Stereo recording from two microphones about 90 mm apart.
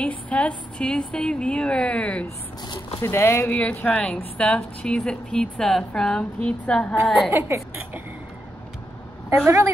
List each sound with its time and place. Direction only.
0.0 s a woman's voice: 15° left (ahead or behind)
3.0 s speech: 30° left (ahead or behind)
3.5 s a woman's voice: 15° left (ahead or behind)
7.2 s a woman's voice: 30° right (ahead or behind)